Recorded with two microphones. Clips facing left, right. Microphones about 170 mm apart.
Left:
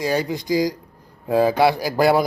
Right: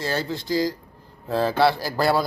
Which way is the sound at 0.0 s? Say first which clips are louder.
Left 5 dB; 15° left (ahead or behind).